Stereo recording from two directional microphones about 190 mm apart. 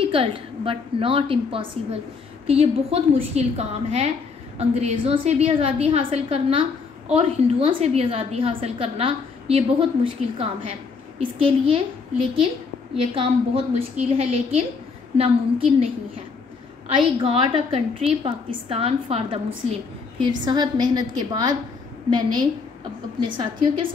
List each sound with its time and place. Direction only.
0.0 s a woman's voice: 30° right (ahead or behind)
20.2 s a woman's voice: 20° right (ahead or behind)